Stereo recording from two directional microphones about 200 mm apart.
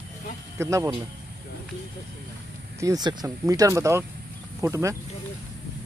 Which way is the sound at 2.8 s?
20° right (ahead or behind).